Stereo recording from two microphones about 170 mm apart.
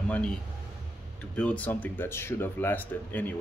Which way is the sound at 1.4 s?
10° left (ahead or behind).